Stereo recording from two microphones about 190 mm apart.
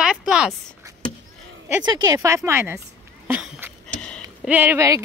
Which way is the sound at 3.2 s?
5° right (ahead or behind).